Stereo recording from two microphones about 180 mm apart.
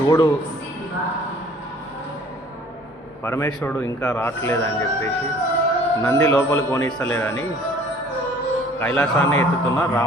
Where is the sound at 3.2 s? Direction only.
15° left (ahead or behind).